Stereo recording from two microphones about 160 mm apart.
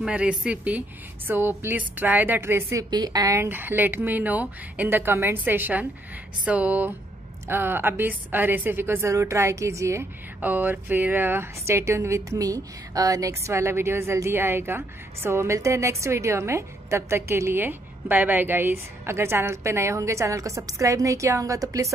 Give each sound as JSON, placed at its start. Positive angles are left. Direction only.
{"t": 0.0, "sound": "a woman's voice", "side_deg": -5}